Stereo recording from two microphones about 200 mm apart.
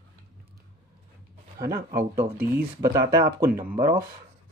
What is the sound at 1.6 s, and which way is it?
Speech, 50° right (ahead or behind).